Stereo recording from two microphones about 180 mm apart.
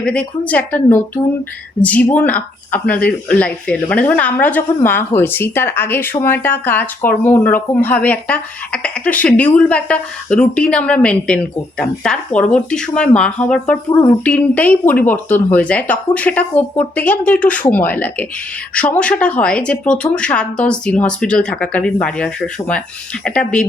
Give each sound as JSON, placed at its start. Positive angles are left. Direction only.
{"t": 0.0, "sound": "speech", "side_deg": 5}